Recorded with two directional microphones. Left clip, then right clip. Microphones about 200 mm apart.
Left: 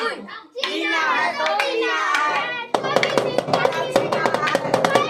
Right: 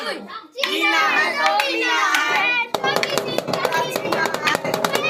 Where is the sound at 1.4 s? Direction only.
5° left (ahead or behind).